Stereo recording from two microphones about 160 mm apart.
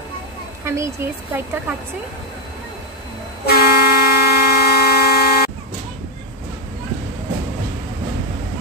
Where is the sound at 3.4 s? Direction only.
75° left (ahead or behind).